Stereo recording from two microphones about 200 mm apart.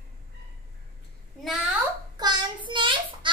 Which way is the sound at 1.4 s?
Centre (ahead or behind).